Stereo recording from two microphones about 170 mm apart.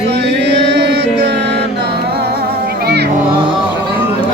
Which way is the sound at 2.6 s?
70° right (ahead or behind).